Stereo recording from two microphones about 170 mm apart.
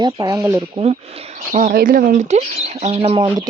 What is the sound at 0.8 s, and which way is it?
Speech, 35° right (ahead or behind).